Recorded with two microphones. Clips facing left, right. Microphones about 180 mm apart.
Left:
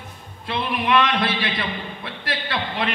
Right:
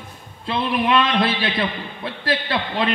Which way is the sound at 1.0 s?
30° right (ahead or behind).